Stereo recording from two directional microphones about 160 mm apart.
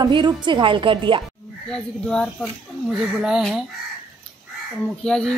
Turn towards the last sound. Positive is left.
turn(degrees=5)  # may be behind; listen again after turning